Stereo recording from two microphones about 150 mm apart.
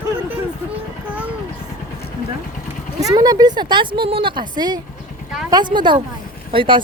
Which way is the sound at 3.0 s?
25° right (ahead or behind).